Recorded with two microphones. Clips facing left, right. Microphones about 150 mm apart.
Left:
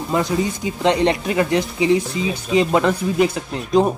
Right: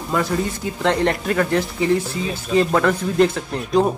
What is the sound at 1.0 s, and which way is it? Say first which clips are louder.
Speech: left 1 dB; 10° left (ahead or behind).